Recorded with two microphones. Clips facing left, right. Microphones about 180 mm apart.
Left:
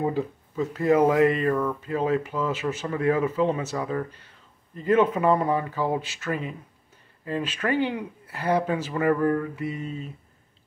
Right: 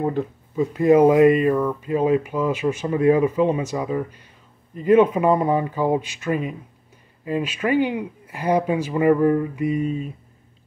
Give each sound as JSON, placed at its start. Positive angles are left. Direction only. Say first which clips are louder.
{"t": 0.0, "sound": "speech", "louder": "right 3 dB", "side_deg": 0}
{"t": 0.6, "sound": "speech", "louder": "right 5 dB", "side_deg": -15}